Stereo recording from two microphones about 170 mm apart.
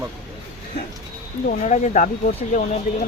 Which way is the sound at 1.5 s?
45° left (ahead or behind).